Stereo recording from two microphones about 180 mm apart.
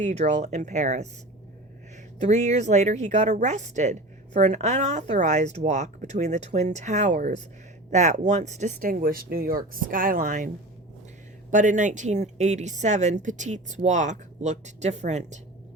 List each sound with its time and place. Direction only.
0.0 s speech: 40° right (ahead or behind)
2.2 s speech: 40° right (ahead or behind)
11.5 s speech: 45° right (ahead or behind)